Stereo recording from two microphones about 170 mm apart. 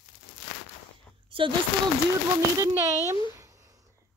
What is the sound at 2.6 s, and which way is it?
Speech, 15° right (ahead or behind).